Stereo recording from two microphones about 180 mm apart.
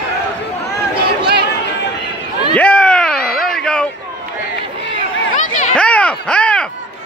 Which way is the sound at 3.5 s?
5° left (ahead or behind).